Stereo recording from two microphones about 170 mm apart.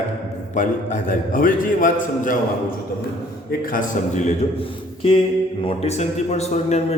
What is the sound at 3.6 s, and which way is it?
Speech, 55° left (ahead or behind).